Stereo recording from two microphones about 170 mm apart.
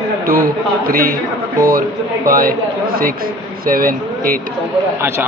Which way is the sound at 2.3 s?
60° right (ahead or behind).